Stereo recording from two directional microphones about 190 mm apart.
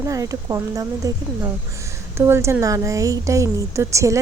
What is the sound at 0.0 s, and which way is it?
A woman's voice, 15° right (ahead or behind).